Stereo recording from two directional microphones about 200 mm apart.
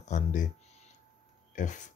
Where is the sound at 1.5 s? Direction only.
40° left (ahead or behind).